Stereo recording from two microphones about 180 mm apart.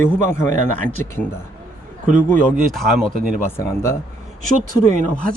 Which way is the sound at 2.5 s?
Centre (ahead or behind).